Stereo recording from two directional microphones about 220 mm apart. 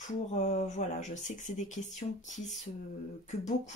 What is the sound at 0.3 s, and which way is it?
Speech, 30° left (ahead or behind).